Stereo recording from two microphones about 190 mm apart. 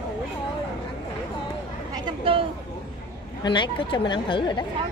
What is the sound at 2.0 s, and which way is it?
Speech, 30° right (ahead or behind).